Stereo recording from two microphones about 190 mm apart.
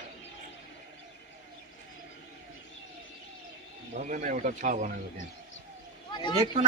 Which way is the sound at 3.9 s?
40° right (ahead or behind).